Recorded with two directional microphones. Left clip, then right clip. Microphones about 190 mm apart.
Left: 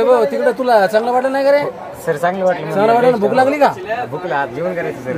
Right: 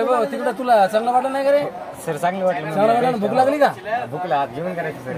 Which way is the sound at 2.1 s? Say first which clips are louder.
Left 5 dB; 15° right (ahead or behind).